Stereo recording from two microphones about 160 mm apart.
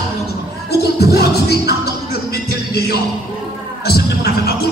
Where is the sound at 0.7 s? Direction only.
85° left.